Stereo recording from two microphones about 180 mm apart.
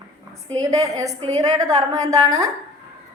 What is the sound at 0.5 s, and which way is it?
A woman's voice, 20° right (ahead or behind).